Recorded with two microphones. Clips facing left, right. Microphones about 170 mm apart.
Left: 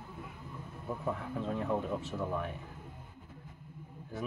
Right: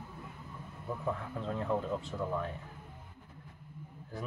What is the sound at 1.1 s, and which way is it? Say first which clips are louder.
Speech: left 1 dB; 10° left (ahead or behind).